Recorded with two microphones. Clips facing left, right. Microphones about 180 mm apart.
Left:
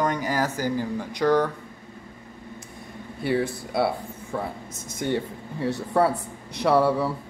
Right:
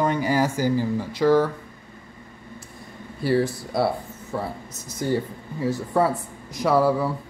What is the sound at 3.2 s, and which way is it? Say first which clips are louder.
A man's voice: right 3 dB; centre (ahead or behind).